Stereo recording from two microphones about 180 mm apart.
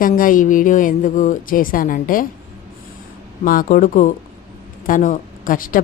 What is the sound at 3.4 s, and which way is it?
Speech, 50° left (ahead or behind).